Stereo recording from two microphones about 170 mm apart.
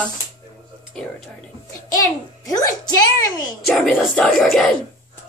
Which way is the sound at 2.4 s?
20° left (ahead or behind).